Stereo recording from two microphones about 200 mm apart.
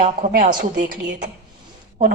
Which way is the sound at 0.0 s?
45° right (ahead or behind).